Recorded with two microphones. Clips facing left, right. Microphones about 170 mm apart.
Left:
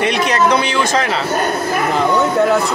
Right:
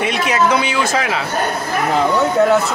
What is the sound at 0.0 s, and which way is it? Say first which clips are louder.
Speech: left 2 dB; 5° right (ahead or behind).